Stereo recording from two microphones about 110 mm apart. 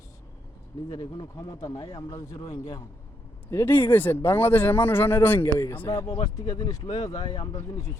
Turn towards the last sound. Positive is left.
turn(degrees=25)  # may be behind; listen again after turning